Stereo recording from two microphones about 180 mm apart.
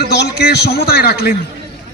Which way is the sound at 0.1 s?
65° left (ahead or behind).